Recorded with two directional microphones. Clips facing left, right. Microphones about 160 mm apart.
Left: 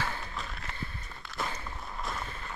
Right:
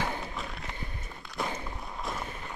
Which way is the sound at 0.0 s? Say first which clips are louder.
Right 3 dB; 15° right (ahead or behind).